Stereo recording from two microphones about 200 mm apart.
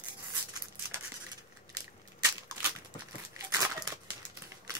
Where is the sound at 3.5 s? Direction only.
20° right (ahead or behind).